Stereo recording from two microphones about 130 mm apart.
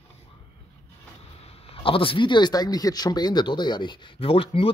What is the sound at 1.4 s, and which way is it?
Speech, 45° left (ahead or behind).